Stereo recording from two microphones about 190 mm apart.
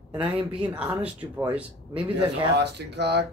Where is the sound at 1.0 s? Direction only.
5° right (ahead or behind).